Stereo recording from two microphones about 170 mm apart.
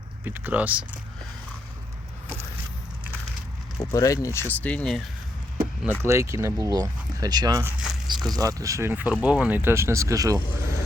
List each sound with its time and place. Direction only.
0.3 s speech: 10° right (ahead or behind)
3.8 s speech: 20° left (ahead or behind); by 5.0 s 5° left (ahead or behind)
5.8 s speech: 15° right (ahead or behind)
10.5 s speech: 60° left (ahead or behind)